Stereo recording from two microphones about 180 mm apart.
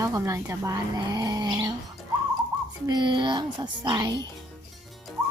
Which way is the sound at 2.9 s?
25° right (ahead or behind).